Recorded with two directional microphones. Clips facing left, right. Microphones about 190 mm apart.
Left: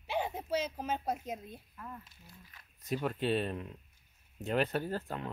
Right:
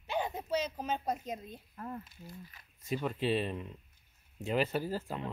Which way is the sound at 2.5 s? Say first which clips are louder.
Even; centre (ahead or behind).